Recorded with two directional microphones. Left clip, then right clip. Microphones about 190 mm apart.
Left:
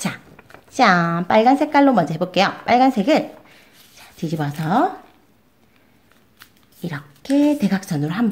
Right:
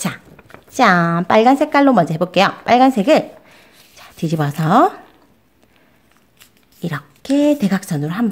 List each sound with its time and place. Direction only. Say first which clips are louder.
0.4 s speech: right 2 dB; 15° right (ahead or behind); by 4.9 s 30° right (ahead or behind)
6.8 s a woman's voice: right 5 dB; 30° right (ahead or behind)